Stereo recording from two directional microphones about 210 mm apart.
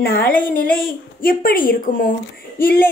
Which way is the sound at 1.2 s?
45° left (ahead or behind).